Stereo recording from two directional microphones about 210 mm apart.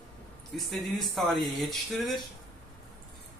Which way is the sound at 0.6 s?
Centre (ahead or behind).